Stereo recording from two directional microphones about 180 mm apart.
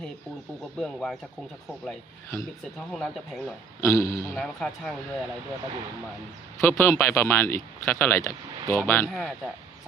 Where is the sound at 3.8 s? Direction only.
15° left (ahead or behind).